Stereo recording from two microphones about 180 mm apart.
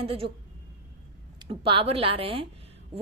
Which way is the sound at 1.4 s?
30° right (ahead or behind).